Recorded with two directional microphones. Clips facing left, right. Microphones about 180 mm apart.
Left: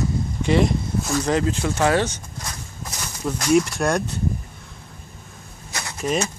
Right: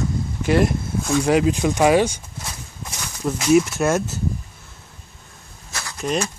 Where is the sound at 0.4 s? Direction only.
5° right (ahead or behind).